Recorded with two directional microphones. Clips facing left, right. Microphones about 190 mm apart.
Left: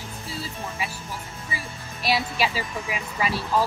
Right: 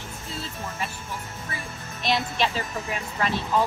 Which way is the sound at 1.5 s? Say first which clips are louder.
Left 3 dB; 5° left (ahead or behind).